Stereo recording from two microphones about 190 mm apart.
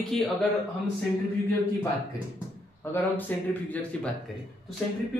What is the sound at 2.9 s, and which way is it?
Speech, 10° left (ahead or behind).